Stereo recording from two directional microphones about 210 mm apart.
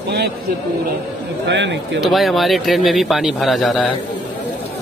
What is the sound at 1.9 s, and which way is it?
Speech, centre (ahead or behind).